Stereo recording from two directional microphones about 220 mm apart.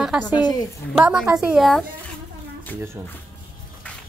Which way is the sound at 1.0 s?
5° right (ahead or behind).